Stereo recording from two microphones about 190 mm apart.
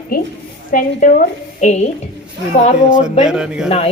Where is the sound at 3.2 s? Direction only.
5° right (ahead or behind).